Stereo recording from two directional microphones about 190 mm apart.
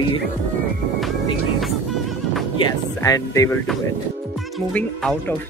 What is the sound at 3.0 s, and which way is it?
Speech, 20° left (ahead or behind).